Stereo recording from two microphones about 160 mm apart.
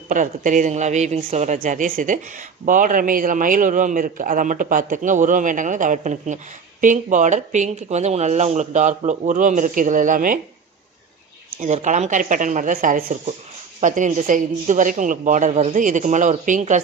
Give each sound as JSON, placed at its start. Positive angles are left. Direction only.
{"t": 0.1, "sound": "a man's voice", "side_deg": -55}
{"t": 11.6, "sound": "a man's voice", "side_deg": -50}